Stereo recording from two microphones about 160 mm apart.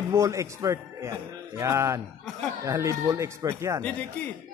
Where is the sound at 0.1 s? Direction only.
20° right (ahead or behind).